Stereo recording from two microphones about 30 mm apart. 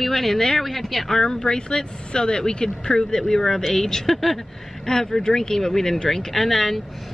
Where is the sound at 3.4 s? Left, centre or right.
Centre.